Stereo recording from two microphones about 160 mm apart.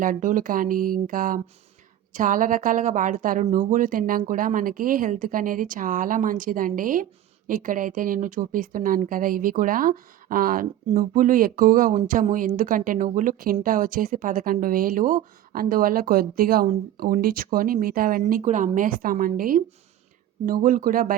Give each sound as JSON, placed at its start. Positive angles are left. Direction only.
{"t": 0.0, "sound": "speech", "side_deg": -55}
{"t": 18.4, "sound": "speech", "side_deg": -50}